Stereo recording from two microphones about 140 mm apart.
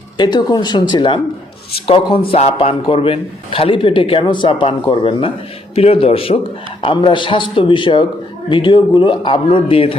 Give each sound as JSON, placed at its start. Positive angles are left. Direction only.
{"t": 0.2, "sound": "a man's voice", "side_deg": 30}